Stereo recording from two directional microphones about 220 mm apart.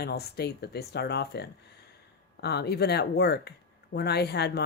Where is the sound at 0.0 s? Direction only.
45° left (ahead or behind).